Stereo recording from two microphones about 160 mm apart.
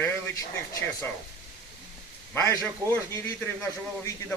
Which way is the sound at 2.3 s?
20° left (ahead or behind).